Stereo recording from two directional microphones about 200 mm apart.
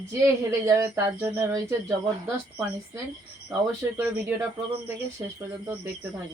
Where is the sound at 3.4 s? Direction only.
10° right (ahead or behind).